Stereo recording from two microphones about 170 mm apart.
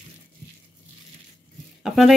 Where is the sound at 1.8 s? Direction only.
Centre (ahead or behind).